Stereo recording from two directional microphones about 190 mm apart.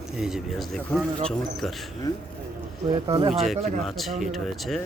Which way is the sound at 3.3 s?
Centre (ahead or behind).